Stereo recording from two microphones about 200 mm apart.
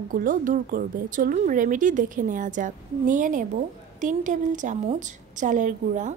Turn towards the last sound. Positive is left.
turn(degrees=-40)  # may be behind; listen again after turning